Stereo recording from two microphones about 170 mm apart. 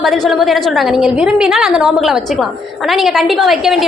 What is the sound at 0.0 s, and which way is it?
A woman's voice, centre (ahead or behind).